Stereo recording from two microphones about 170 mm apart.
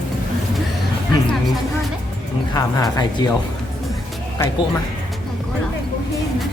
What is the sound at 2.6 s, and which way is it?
Speech, 20° left (ahead or behind).